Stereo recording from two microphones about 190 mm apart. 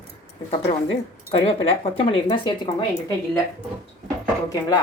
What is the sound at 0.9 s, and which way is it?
Speech, 30° left (ahead or behind).